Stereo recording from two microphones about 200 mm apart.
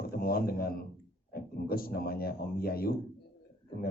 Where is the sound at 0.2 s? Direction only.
50° left (ahead or behind).